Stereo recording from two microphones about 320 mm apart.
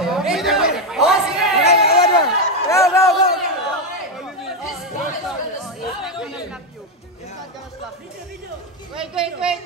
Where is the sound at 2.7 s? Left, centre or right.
Centre.